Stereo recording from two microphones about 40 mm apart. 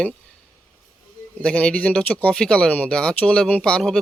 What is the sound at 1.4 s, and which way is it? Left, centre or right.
Speech, left.